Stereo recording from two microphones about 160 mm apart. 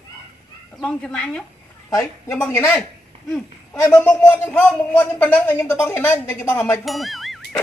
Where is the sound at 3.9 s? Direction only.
10° left (ahead or behind).